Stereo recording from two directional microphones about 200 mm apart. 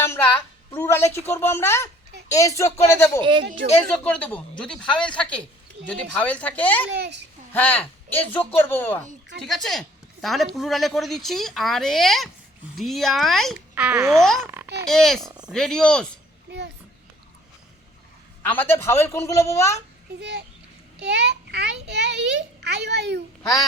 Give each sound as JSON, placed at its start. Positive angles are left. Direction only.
{"t": 0.7, "sound": "a woman's voice", "side_deg": 10}
{"t": 3.2, "sound": "speech", "side_deg": -25}
{"t": 3.6, "sound": "speech", "side_deg": -45}
{"t": 3.9, "sound": "a woman's voice", "side_deg": 5}
{"t": 6.9, "sound": "a child's voice", "side_deg": -55}
{"t": 7.5, "sound": "a woman's voice", "side_deg": 10}
{"t": 14.2, "sound": "speech", "side_deg": 0}
{"t": 14.4, "sound": "a sound", "side_deg": -10}
{"t": 14.8, "sound": "speech", "side_deg": 0}
{"t": 18.4, "sound": "a woman's voice", "side_deg": 10}
{"t": 20.1, "sound": "a child's voice", "side_deg": -55}
{"t": 23.4, "sound": "speech", "side_deg": 20}